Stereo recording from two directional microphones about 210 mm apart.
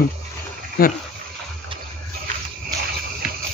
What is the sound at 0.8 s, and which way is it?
Speech, 45° left (ahead or behind).